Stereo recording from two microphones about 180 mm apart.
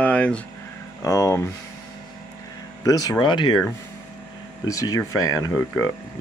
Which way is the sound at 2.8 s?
20° left (ahead or behind).